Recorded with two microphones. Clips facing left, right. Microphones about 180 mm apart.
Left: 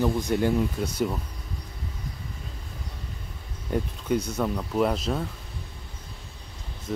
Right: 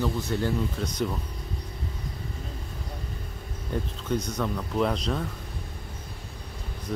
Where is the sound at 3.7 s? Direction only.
10° left (ahead or behind).